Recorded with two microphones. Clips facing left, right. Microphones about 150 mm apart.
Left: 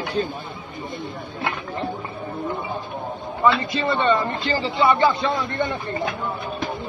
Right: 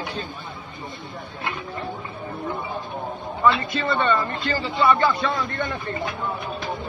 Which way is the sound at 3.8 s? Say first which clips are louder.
Left 2 dB; 20° left (ahead or behind).